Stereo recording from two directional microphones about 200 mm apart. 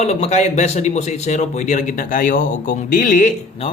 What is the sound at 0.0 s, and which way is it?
A man's voice, 30° left (ahead or behind).